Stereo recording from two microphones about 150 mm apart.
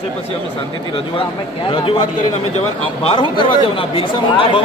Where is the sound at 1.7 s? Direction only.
35° left (ahead or behind).